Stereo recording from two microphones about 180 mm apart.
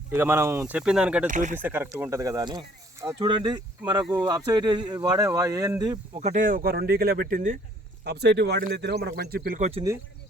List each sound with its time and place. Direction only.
0.1 s speech: 10° right (ahead or behind)
1.3 s speech: 45° right (ahead or behind)
1.5 s speech: 10° right (ahead or behind)
6.1 s speech: 40° right (ahead or behind)
8.0 s speech: 65° right (ahead or behind)